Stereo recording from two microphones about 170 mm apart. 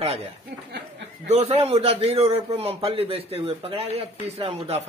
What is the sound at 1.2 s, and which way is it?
A man's voice, 35° right (ahead or behind).